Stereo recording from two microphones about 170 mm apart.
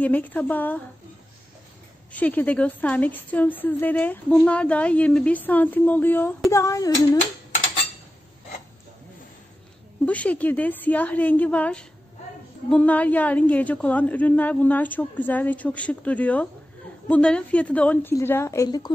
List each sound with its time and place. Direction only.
0.0 s a woman's voice: 10° left (ahead or behind)
2.1 s a woman's voice: 10° left (ahead or behind)
10.0 s a woman's voice: 10° left (ahead or behind); by 18.9 s 25° left (ahead or behind)